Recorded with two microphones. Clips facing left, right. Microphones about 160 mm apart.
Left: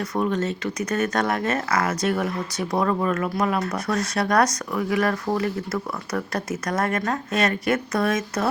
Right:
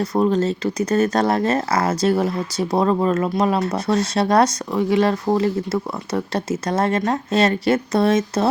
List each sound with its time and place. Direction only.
0.0 s speech: 30° right (ahead or behind)